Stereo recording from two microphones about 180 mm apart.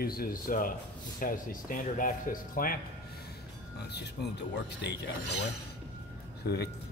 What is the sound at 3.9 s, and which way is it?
Speech, 70° left (ahead or behind).